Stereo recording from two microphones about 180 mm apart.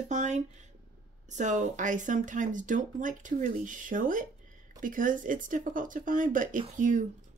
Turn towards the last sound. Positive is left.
turn(degrees=-45)  # may be behind; listen again after turning